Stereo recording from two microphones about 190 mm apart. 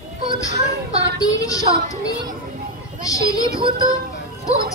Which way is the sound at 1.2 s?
20° left (ahead or behind).